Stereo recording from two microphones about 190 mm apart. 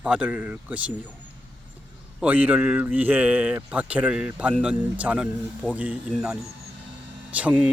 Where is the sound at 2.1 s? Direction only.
10° right (ahead or behind).